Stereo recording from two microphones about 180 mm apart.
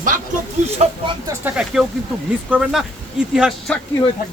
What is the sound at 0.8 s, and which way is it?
Speech, 40° right (ahead or behind).